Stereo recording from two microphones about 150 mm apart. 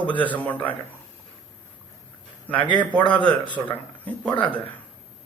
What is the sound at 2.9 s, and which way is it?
Speech, 10° left (ahead or behind).